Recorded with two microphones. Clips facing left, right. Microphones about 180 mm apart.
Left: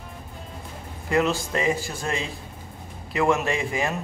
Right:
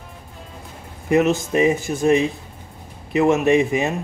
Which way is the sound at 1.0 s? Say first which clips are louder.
Right 6 dB; 20° right (ahead or behind).